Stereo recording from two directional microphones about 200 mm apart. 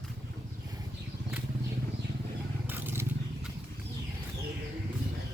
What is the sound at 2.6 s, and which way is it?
Wild animals, 10° right (ahead or behind).